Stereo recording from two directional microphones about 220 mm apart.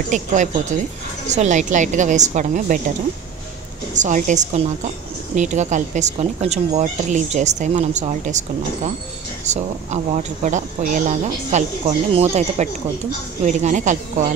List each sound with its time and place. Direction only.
0.1 s speech: 35° right (ahead or behind)
3.9 s speech: 35° right (ahead or behind)